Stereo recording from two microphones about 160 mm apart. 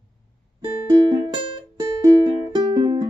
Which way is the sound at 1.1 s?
30° right (ahead or behind).